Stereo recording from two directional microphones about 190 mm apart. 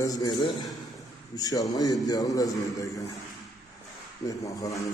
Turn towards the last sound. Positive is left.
turn(degrees=15)  # may be behind; listen again after turning